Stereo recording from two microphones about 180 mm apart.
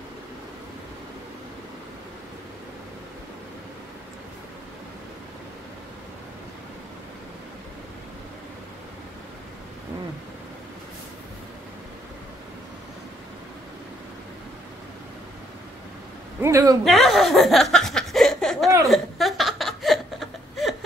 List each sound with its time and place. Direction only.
16.3 s a man's voice: 15° right (ahead or behind)
16.8 s laughter: centre (ahead or behind)
18.9 s chuckle: centre (ahead or behind)